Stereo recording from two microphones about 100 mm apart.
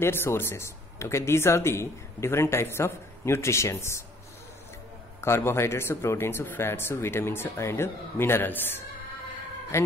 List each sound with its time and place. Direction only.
0.0 s speech: 25° left (ahead or behind)
5.2 s speech: 25° left (ahead or behind)